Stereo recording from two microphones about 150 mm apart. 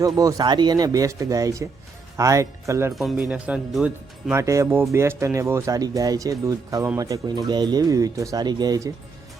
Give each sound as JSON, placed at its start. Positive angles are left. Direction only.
{"t": 0.0, "sound": "speech", "side_deg": -25}
{"t": 2.9, "sound": "speech", "side_deg": 0}